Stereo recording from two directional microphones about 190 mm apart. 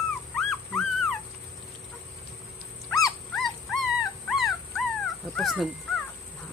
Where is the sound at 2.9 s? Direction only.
15° left (ahead or behind).